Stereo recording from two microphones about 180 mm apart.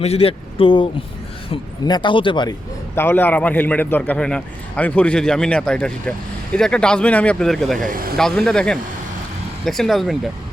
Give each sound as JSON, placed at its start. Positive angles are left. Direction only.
{"t": 0.0, "sound": "speech", "side_deg": 35}
{"t": 2.9, "sound": "a man's voice", "side_deg": 10}
{"t": 7.8, "sound": "speech", "side_deg": -50}
{"t": 8.1, "sound": "speech", "side_deg": 5}